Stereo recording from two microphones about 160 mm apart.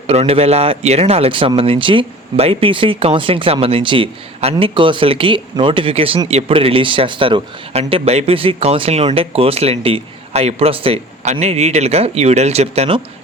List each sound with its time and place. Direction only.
0.1 s speech: 40° right (ahead or behind)